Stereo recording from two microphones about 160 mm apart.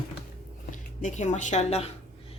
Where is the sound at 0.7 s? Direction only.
50° left (ahead or behind).